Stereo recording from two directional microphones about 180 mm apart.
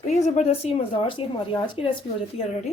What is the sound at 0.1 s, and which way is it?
A woman's voice, 40° left (ahead or behind).